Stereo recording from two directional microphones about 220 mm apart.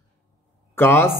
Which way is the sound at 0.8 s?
10° left (ahead or behind).